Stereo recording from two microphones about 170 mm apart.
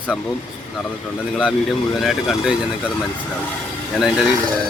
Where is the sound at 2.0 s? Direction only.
Centre (ahead or behind).